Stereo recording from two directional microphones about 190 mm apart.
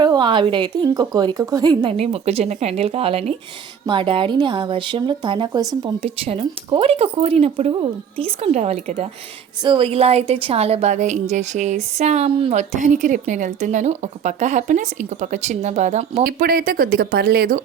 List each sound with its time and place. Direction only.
0.0 s a woman's voice: 25° right (ahead or behind)
16.2 s speech: 50° right (ahead or behind)